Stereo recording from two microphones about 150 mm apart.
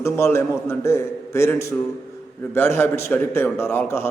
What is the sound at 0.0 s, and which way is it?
A man's voice, 20° left (ahead or behind).